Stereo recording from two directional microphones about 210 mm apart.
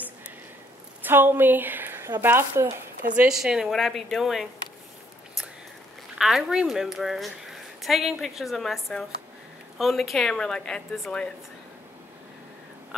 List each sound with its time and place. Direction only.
1.0 s a woman's voice: 10° right (ahead or behind)
6.1 s a woman's voice: centre (ahead or behind)